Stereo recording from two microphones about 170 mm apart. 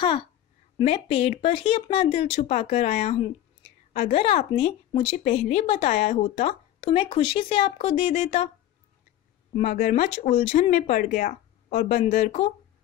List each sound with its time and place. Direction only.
0.7 s speech: 35° left (ahead or behind)
9.6 s speech: 60° left (ahead or behind)
9.9 s speech: 40° left (ahead or behind)